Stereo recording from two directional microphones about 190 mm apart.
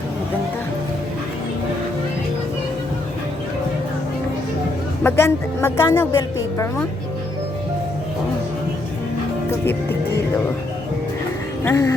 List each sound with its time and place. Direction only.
5.0 s speech: 10° left (ahead or behind)
11.6 s speech: 15° left (ahead or behind)